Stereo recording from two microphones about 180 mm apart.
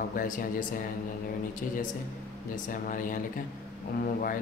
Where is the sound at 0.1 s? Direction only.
50° left (ahead or behind).